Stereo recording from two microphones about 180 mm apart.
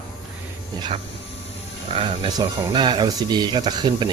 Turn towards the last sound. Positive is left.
turn(degrees=-25)  # may be behind; listen again after turning